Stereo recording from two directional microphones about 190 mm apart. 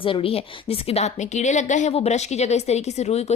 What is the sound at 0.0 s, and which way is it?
A woman's voice, 30° left (ahead or behind).